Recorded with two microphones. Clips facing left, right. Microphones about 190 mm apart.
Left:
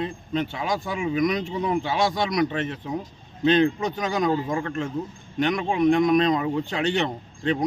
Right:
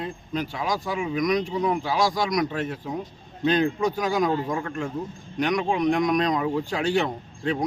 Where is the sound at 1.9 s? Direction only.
25° left (ahead or behind).